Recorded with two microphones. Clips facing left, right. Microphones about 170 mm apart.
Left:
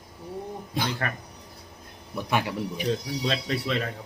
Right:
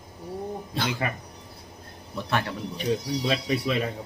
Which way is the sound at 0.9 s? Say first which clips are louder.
Right 2 dB; 10° right (ahead or behind).